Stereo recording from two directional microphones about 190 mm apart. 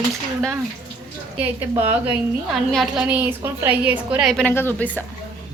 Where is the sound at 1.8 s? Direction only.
10° right (ahead or behind).